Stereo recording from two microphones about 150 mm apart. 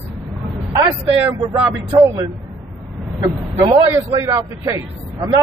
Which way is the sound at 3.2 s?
20° right (ahead or behind).